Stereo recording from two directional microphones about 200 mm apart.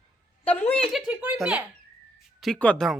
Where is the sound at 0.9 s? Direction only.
5° right (ahead or behind).